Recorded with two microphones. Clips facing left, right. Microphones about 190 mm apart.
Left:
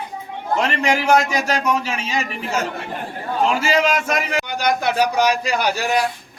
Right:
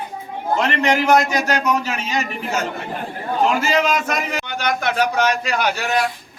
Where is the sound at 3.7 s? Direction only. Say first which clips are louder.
Left 1 dB; 10° left (ahead or behind).